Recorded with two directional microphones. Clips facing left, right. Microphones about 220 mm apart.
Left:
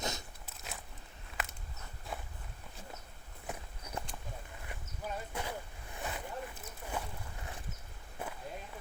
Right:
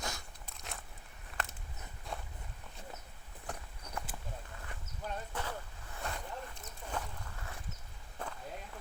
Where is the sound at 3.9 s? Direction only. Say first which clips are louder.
Left 1 dB; 10° left (ahead or behind).